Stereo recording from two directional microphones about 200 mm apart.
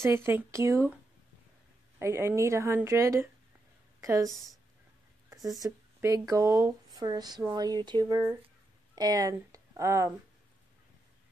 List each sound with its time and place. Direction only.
0.0 s a woman's voice: 10° right (ahead or behind)
2.0 s a woman's voice: 15° right (ahead or behind)
4.3 s speech: centre (ahead or behind)
5.6 s speech: 15° right (ahead or behind)